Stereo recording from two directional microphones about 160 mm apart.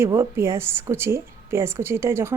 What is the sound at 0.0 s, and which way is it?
Speech, 15° right (ahead or behind).